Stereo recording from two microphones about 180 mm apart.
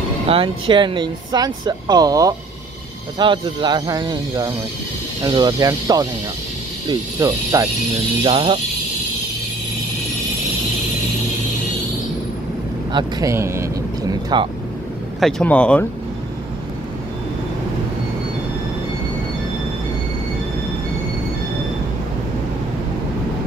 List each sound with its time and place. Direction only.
0.3 s speech: 30° right (ahead or behind)
8.2 s speech: 30° right (ahead or behind)
12.9 s speech: 15° right (ahead or behind)
15.1 s speech: centre (ahead or behind)